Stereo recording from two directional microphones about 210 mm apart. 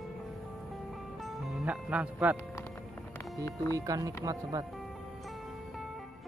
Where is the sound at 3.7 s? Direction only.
15° right (ahead or behind).